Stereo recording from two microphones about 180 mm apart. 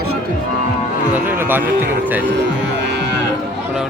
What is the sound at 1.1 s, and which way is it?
Speech, 10° right (ahead or behind).